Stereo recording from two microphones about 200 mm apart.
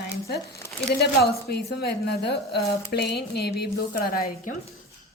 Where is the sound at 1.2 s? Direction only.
55° left (ahead or behind).